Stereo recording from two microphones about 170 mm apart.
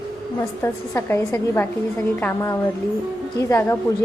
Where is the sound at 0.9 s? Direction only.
15° left (ahead or behind).